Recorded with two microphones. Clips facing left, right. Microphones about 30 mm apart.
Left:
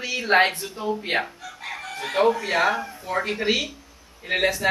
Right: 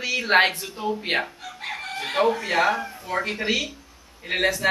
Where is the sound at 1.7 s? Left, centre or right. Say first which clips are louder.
Right 1 dB; right.